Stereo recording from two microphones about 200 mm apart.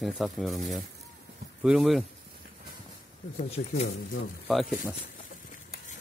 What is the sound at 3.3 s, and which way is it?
Speech, 30° left (ahead or behind).